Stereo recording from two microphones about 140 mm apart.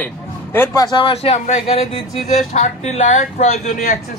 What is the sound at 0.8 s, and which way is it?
A man's voice, 35° left (ahead or behind).